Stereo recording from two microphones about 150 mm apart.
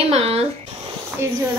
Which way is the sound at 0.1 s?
40° right (ahead or behind).